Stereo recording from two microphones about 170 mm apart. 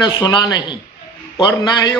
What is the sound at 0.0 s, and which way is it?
A man's voice, 25° left (ahead or behind).